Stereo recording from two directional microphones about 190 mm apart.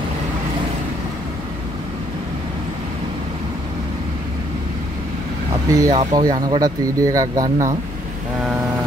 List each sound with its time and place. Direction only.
5.7 s speech: 20° right (ahead or behind)